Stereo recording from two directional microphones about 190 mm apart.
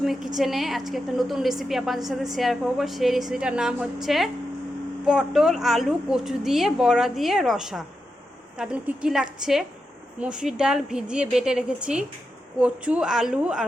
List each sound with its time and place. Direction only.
0.0 s a woman's voice: centre (ahead or behind)